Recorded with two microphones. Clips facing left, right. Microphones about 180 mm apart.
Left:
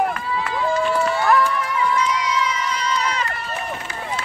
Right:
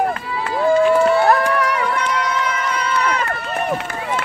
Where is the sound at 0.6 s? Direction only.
55° right (ahead or behind).